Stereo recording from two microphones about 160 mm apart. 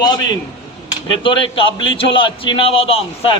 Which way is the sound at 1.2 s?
30° left (ahead or behind).